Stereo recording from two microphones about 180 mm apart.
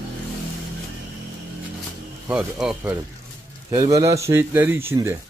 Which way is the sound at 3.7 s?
20° right (ahead or behind).